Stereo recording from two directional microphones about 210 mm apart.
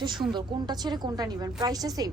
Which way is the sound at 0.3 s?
20° right (ahead or behind).